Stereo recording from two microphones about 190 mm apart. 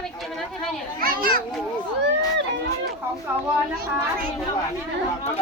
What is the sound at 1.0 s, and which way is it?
Speech, 50° right (ahead or behind).